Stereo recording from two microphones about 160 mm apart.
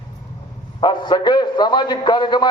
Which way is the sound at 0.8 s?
30° left (ahead or behind).